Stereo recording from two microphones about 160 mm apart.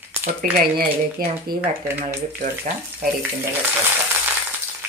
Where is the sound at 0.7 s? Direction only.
65° right (ahead or behind).